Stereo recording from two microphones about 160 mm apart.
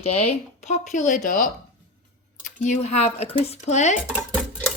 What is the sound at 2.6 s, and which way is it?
Speech, 45° left (ahead or behind).